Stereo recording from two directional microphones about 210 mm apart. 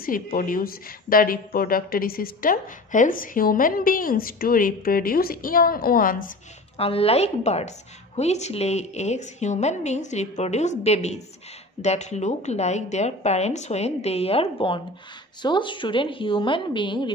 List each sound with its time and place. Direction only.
0.0 s speech: 40° left (ahead or behind)
6.8 s a woman's voice: 25° left (ahead or behind)